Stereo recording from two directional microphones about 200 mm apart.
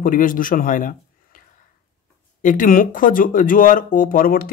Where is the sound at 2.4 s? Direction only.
45° left (ahead or behind).